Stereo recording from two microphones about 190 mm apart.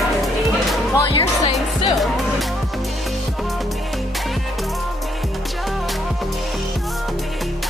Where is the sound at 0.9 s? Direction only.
20° left (ahead or behind).